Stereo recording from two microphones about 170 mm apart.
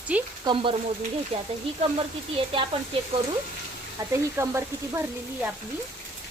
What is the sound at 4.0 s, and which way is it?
Speech, 20° right (ahead or behind).